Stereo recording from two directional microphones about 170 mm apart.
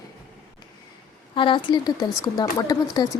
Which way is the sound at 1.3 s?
30° left (ahead or behind).